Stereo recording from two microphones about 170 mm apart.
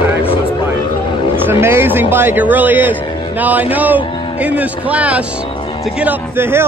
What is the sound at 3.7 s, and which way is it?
A man's voice, 10° right (ahead or behind).